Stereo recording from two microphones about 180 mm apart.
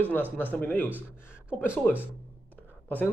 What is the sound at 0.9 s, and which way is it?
Speech, 10° right (ahead or behind).